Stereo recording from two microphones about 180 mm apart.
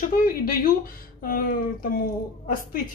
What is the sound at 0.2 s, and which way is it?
Speech, 55° left (ahead or behind).